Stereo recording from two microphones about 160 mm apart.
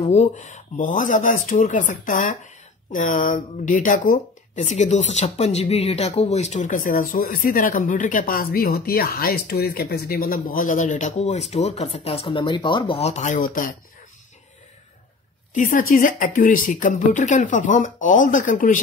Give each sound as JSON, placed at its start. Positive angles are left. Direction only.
{"t": 0.1, "sound": "speech", "side_deg": 50}
{"t": 15.5, "sound": "speech", "side_deg": 55}